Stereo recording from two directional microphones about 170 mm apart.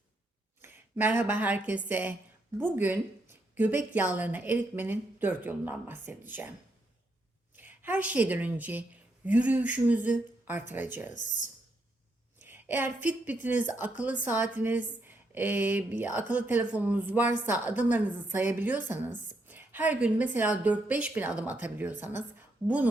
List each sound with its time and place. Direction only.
0.6 s a woman's voice: 10° right (ahead or behind)
7.5 s a woman's voice: 10° right (ahead or behind)
11.1 s speech: 45° left (ahead or behind)
12.5 s a woman's voice: 10° right (ahead or behind)